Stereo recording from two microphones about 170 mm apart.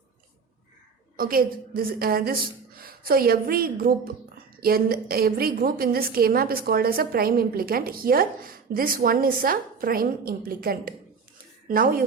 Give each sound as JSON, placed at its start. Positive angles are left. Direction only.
{"t": 1.1, "sound": "a woman's voice", "side_deg": -60}